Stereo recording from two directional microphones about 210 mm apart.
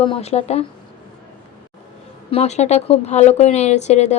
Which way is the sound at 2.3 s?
30° left (ahead or behind).